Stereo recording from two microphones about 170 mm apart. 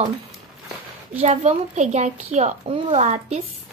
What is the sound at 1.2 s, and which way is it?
Child singing, 40° right (ahead or behind).